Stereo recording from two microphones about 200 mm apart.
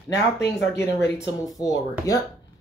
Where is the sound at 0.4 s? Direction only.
60° left (ahead or behind).